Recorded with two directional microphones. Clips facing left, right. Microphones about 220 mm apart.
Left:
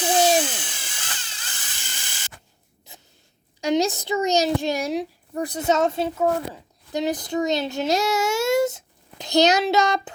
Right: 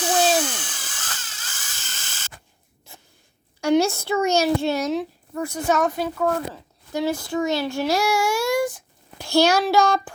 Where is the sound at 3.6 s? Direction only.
15° left (ahead or behind).